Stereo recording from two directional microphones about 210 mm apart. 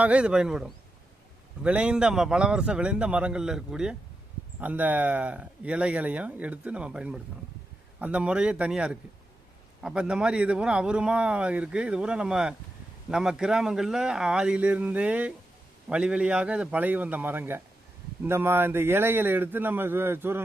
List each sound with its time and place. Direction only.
0.0 s a man's voice: 5° right (ahead or behind)